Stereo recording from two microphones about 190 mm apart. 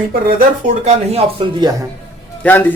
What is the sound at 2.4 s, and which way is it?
Speech, 10° left (ahead or behind).